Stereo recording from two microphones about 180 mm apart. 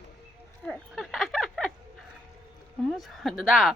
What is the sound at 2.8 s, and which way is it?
Speech, centre (ahead or behind).